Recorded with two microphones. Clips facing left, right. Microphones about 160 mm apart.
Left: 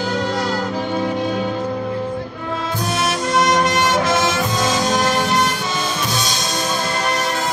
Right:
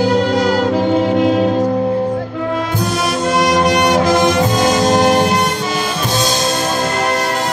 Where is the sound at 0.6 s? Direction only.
70° right (ahead or behind).